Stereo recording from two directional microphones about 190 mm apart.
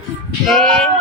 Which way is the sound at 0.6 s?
5° left (ahead or behind).